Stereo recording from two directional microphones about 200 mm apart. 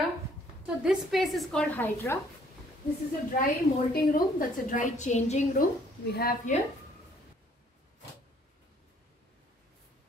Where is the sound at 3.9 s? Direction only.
45° left (ahead or behind).